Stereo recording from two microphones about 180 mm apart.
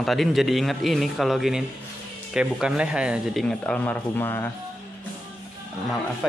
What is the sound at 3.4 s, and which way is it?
Speech, 5° left (ahead or behind).